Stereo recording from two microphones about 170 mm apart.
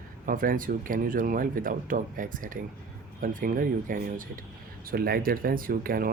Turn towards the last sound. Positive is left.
turn(degrees=-60)  # may be behind; listen again after turning